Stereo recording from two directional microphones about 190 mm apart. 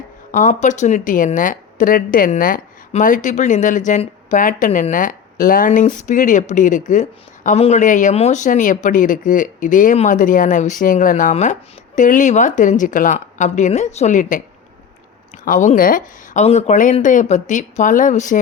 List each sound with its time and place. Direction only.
0.3 s speech: 40° left (ahead or behind)
15.4 s speech: 45° left (ahead or behind)